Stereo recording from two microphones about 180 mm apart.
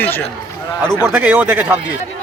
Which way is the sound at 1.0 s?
10° right (ahead or behind).